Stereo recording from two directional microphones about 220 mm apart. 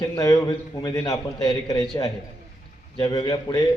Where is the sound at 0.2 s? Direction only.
15° left (ahead or behind).